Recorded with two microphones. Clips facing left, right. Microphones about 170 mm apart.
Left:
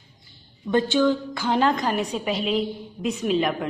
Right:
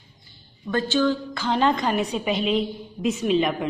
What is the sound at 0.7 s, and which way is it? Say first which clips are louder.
A woman's voice: left 2 dB; 15° left (ahead or behind).